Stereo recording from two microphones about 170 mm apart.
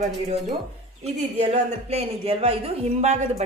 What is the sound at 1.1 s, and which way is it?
Speech, 45° right (ahead or behind).